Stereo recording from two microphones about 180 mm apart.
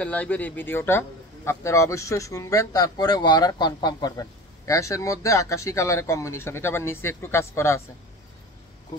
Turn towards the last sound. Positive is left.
turn(degrees=15)  # may be behind; listen again after turning